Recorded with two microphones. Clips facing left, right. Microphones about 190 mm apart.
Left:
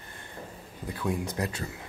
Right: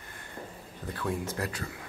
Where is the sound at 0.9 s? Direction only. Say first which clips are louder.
Left 2 dB; 15° left (ahead or behind).